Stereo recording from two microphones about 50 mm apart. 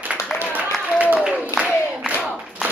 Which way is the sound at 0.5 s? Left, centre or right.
Right.